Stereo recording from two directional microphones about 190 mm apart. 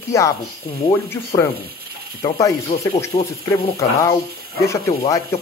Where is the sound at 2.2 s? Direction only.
20° left (ahead or behind).